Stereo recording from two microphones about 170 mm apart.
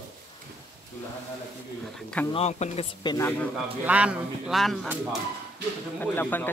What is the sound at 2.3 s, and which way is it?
Speech, 40° left (ahead or behind).